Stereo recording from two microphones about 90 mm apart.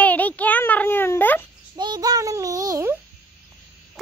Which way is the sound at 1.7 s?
50° right (ahead or behind).